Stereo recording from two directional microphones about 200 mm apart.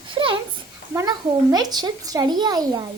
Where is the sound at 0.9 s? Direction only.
20° right (ahead or behind).